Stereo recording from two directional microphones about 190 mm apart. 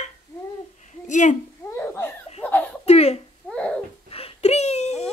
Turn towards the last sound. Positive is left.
turn(degrees=35)  # may be behind; listen again after turning